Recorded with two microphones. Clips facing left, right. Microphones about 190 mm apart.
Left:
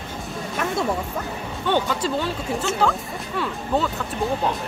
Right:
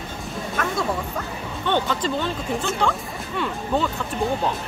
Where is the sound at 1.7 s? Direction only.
10° left (ahead or behind).